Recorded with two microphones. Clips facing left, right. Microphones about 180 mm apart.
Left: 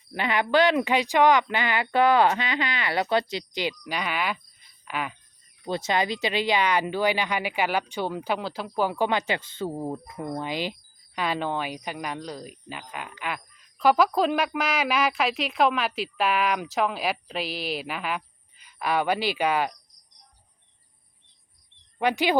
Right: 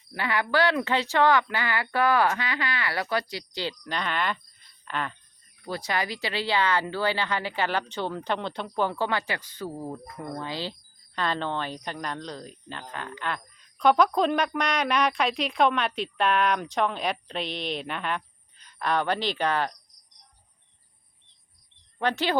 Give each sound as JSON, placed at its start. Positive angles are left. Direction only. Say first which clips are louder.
{"t": 0.1, "sound": "speech", "louder": "left 3 dB", "side_deg": 20}
{"t": 5.6, "sound": "speech", "louder": "left 4 dB", "side_deg": 20}
{"t": 21.9, "sound": "speech", "louder": "left 3 dB", "side_deg": 15}